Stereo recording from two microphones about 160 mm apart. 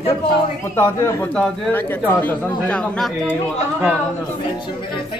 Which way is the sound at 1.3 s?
5° left (ahead or behind).